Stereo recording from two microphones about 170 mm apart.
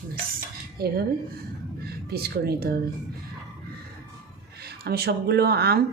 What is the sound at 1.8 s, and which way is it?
Speech, 70° right (ahead or behind).